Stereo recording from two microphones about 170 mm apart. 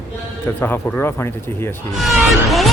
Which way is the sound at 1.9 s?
Centre (ahead or behind).